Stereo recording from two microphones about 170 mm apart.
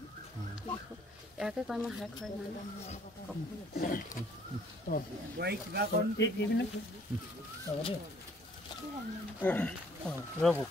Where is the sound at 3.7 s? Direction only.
55° left (ahead or behind).